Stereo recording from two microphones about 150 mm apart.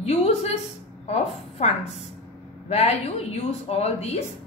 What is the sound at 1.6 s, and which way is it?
A woman's voice, 45° left (ahead or behind).